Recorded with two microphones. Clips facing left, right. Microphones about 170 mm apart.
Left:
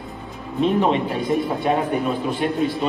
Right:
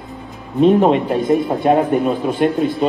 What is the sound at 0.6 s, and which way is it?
Speech, 45° right (ahead or behind).